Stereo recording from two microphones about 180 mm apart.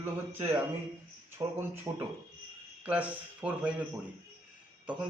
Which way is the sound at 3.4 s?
10° right (ahead or behind).